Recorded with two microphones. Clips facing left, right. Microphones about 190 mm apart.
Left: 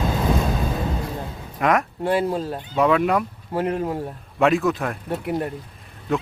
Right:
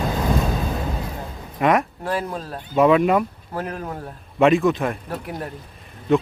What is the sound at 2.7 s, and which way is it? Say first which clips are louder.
Speech: right 3 dB; 5° right (ahead or behind).